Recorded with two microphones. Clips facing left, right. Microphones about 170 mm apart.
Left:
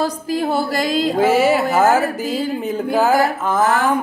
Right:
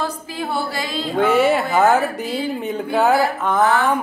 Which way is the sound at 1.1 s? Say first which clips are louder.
Right 1 dB; 5° left (ahead or behind).